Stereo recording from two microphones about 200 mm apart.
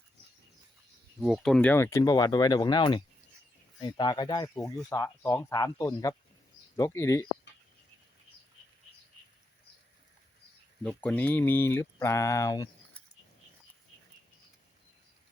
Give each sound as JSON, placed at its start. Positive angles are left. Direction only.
{"t": 1.2, "sound": "speech", "side_deg": 0}
{"t": 10.8, "sound": "speech", "side_deg": 10}